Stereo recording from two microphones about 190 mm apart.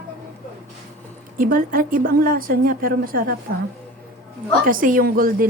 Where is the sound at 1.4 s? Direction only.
45° right (ahead or behind).